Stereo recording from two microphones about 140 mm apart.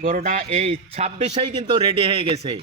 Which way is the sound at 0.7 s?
50° right (ahead or behind).